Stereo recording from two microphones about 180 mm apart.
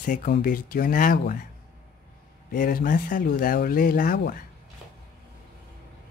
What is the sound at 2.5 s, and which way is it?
Speech, 50° left (ahead or behind).